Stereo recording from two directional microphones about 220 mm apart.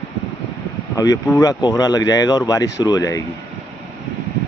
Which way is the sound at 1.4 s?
15° left (ahead or behind).